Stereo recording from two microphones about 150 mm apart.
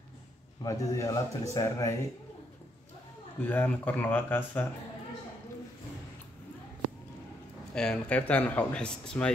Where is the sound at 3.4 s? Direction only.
10° left (ahead or behind).